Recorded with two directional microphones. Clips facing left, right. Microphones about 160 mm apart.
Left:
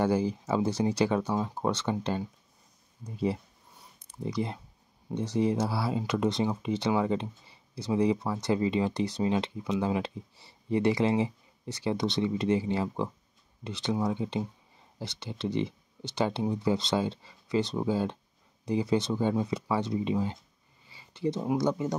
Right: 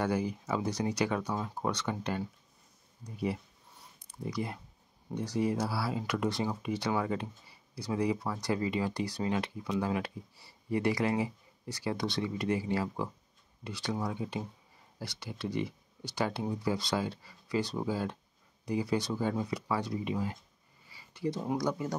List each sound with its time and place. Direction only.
0.0 s speech: 30° left (ahead or behind)